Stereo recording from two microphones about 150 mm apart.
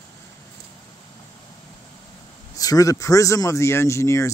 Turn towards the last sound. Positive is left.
turn(degrees=20)  # may be behind; listen again after turning